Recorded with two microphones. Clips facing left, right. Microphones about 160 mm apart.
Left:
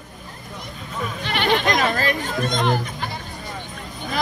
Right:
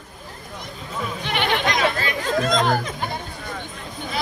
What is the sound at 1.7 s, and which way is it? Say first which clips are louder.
Chatter: left 2 dB; 45° left (ahead or behind).